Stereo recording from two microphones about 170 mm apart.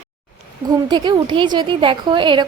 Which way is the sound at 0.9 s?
25° right (ahead or behind).